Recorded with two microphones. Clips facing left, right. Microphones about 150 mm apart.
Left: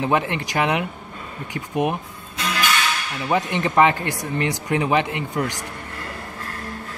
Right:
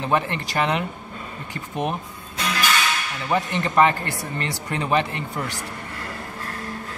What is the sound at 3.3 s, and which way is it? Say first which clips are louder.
Speech: left 2 dB; 15° left (ahead or behind).